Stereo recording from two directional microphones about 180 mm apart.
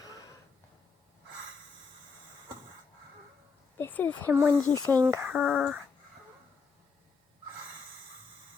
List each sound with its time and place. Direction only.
3.8 s speech: 10° left (ahead or behind)
4.3 s speech: 15° right (ahead or behind)
4.6 s speech: 15° left (ahead or behind)
4.9 s speech: 20° right (ahead or behind)
5.3 s speech: 5° right (ahead or behind)